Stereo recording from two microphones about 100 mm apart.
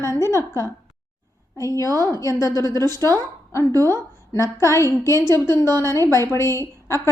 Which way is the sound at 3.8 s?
30° left (ahead or behind).